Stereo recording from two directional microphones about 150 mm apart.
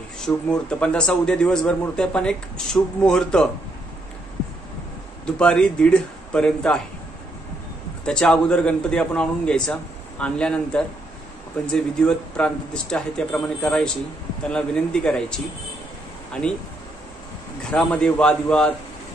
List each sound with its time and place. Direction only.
0.2 s a man's voice: 5° left (ahead or behind)
5.2 s a man's voice: 5° left (ahead or behind)
8.0 s a man's voice: 5° left (ahead or behind)
17.6 s a man's voice: 5° left (ahead or behind)